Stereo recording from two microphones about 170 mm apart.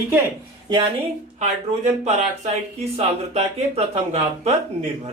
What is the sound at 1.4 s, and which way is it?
Speech, 45° right (ahead or behind).